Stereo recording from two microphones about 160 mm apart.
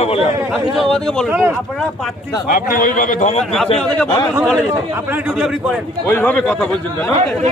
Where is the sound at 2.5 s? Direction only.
60° left (ahead or behind).